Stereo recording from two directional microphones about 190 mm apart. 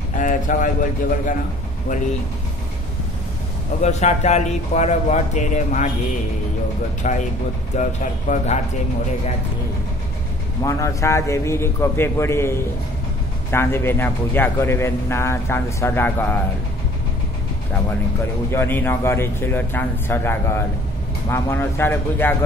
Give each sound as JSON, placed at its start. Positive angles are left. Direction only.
{"t": 0.1, "sound": "a sound", "side_deg": 45}
{"t": 3.8, "sound": "speech", "side_deg": 35}
{"t": 7.0, "sound": "speech", "side_deg": 40}
{"t": 10.6, "sound": "a man's voice", "side_deg": 15}
{"t": 18.5, "sound": "a man's voice", "side_deg": 10}